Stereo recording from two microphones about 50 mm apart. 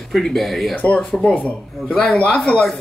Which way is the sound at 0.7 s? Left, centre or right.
Left.